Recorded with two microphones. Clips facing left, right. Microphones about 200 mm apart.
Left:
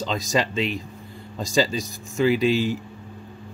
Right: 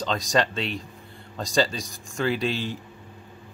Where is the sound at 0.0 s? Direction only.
5° left (ahead or behind).